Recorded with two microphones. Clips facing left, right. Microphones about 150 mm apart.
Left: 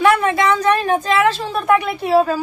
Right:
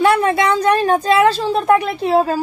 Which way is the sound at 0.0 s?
35° right (ahead or behind).